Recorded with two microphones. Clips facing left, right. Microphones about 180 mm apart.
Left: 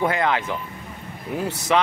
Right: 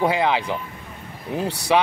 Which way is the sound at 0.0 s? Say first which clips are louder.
Right 2 dB; 10° right (ahead or behind).